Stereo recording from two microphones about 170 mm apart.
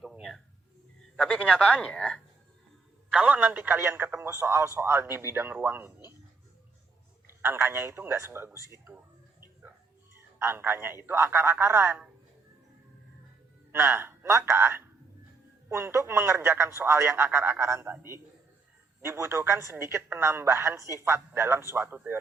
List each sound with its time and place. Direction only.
0.0 s a sound: centre (ahead or behind)
1.5 s speech: 5° left (ahead or behind)
3.1 s a woman's voice: 5° right (ahead or behind)
7.4 s a woman's voice: 15° right (ahead or behind)
10.3 s a woman's voice: 15° right (ahead or behind)
13.7 s a woman's voice: 15° right (ahead or behind)